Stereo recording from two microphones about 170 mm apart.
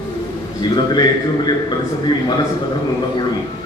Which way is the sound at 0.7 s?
25° left (ahead or behind).